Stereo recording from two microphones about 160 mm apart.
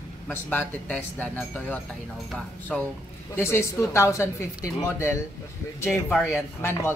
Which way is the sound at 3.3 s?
15° left (ahead or behind).